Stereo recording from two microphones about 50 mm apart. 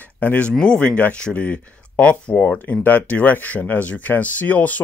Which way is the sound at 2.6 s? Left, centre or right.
Left.